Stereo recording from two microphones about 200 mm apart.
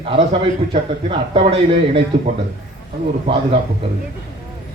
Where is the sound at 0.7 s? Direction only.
30° right (ahead or behind).